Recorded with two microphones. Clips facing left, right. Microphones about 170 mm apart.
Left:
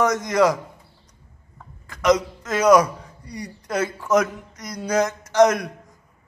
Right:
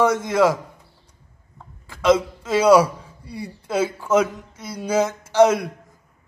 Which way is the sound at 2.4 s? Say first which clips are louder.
Right 1 dB; 10° right (ahead or behind).